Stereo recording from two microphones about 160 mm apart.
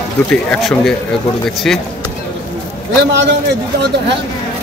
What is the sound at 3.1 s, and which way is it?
Speech, 90° right.